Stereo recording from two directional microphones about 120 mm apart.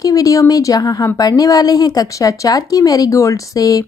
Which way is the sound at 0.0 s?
30° left (ahead or behind).